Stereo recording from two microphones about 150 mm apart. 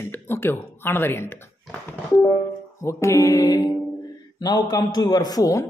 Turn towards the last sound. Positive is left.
turn(degrees=25)  # may be behind; listen again after turning